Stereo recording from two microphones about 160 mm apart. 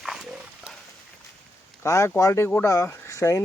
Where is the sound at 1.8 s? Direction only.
15° left (ahead or behind).